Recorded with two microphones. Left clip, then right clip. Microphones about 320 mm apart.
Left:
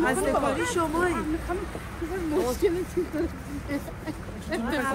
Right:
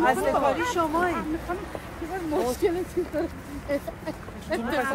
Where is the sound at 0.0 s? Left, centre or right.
Centre.